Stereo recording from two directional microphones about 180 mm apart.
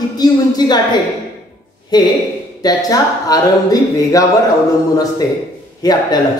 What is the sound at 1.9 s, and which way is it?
Speech, 25° left (ahead or behind).